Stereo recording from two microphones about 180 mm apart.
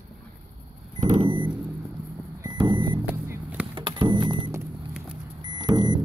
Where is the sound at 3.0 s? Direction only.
10° right (ahead or behind).